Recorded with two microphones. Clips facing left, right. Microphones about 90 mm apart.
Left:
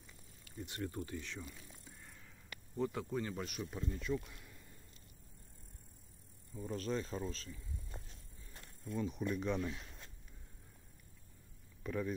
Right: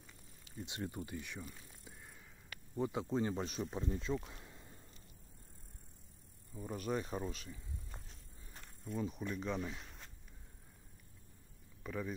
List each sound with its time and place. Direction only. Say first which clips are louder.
0.5 s speech: even; 20° right (ahead or behind)
6.5 s speech: even; 10° right (ahead or behind)
8.8 s speech: left 2 dB; 5° right (ahead or behind)
11.8 s speech: left 3 dB; 5° right (ahead or behind)